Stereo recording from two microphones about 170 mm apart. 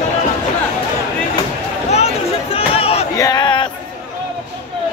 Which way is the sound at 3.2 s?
20° left (ahead or behind).